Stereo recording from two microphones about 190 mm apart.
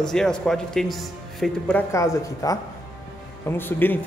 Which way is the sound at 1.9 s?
15° left (ahead or behind).